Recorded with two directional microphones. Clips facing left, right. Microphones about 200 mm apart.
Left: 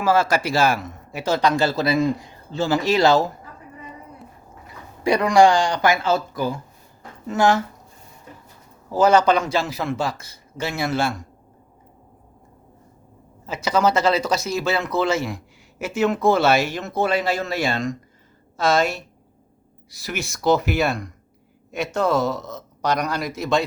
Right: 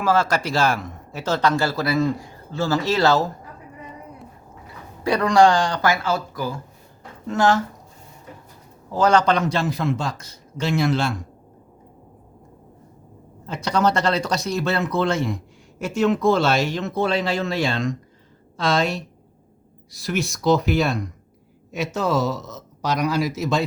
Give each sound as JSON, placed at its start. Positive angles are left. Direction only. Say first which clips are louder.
{"t": 0.0, "sound": "speech", "louder": "left 1 dB", "side_deg": 10}
{"t": 5.0, "sound": "speech", "louder": "left 1 dB", "side_deg": 10}
{"t": 7.3, "sound": "speech", "louder": "even", "side_deg": 10}
{"t": 8.9, "sound": "a man's voice", "louder": "left 2 dB", "side_deg": 5}
{"t": 13.4, "sound": "a man's voice", "louder": "left 1 dB", "side_deg": 5}